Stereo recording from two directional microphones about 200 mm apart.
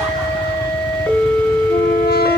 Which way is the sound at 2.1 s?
50° left (ahead or behind).